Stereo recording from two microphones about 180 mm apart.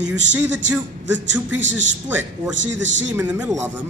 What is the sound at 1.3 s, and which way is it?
A man's voice, 90° right.